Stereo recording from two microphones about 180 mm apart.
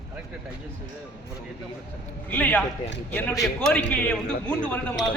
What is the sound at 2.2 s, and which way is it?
A man's voice, 10° left (ahead or behind).